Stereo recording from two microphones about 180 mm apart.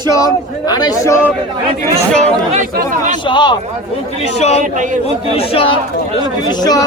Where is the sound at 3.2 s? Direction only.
25° left (ahead or behind).